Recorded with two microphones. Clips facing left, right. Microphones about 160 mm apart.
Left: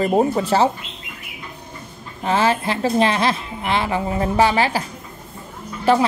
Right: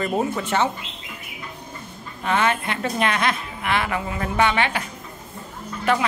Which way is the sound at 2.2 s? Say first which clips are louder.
Left 3 dB; 30° left (ahead or behind).